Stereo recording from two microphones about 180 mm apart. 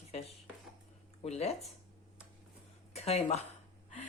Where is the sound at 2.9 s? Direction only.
35° left (ahead or behind).